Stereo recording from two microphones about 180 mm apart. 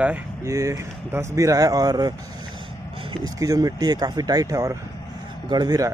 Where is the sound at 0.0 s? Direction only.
10° right (ahead or behind).